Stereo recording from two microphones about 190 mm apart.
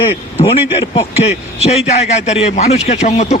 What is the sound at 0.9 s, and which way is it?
A man's voice, 35° left (ahead or behind).